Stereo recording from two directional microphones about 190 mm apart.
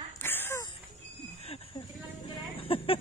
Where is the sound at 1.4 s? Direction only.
30° left (ahead or behind).